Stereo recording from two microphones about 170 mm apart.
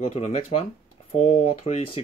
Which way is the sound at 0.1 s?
40° left (ahead or behind).